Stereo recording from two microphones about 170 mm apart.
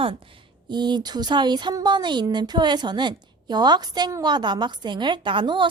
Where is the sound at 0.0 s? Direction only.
30° right (ahead or behind).